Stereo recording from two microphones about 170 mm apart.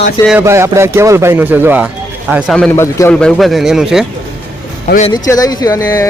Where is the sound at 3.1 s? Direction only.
5° left (ahead or behind).